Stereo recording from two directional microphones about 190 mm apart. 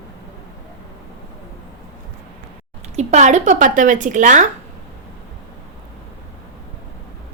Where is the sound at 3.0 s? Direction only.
40° right (ahead or behind).